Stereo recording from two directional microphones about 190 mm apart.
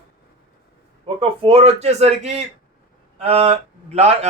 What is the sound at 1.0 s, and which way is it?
Speech, 30° right (ahead or behind).